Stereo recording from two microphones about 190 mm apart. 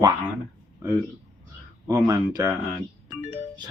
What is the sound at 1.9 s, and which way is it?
Speech, 20° right (ahead or behind).